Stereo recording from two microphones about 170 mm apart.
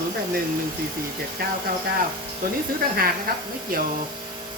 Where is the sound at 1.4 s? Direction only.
60° right (ahead or behind).